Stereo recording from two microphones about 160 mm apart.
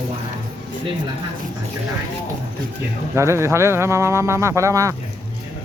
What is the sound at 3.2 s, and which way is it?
Speech, 15° right (ahead or behind).